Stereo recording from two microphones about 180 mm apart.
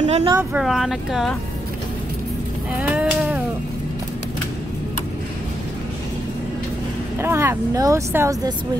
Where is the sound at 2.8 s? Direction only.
5° right (ahead or behind).